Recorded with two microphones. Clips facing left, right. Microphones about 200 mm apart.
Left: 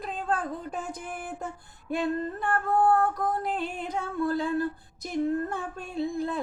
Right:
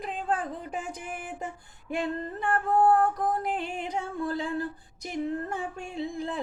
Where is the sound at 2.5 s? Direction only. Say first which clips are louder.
Right 1 dB; 25° right (ahead or behind).